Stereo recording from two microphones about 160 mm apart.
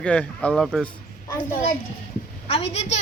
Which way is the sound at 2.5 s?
40° left (ahead or behind).